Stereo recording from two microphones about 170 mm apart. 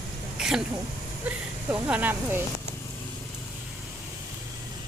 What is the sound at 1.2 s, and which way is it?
Speech, 10° right (ahead or behind).